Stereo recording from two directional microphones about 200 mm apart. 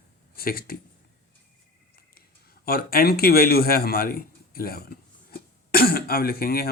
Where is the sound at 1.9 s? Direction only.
50° left (ahead or behind).